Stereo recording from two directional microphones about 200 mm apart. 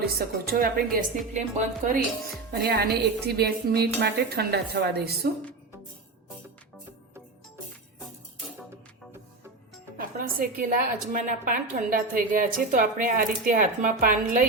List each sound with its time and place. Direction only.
0.0 s a woman's voice: 45° right (ahead or behind)
1.3 s speech: 35° right (ahead or behind)
2.5 s a woman's voice: 50° right (ahead or behind)
10.2 s a woman's voice: 45° right (ahead or behind)